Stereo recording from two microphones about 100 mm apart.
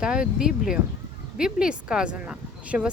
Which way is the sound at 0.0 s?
10° right (ahead or behind).